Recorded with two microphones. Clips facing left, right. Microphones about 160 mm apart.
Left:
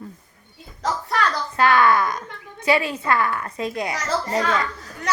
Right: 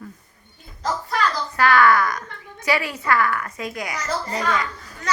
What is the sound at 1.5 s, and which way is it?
A woman's voice, 25° left (ahead or behind).